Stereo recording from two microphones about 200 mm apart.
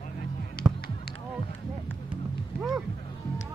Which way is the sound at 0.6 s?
50° left (ahead or behind).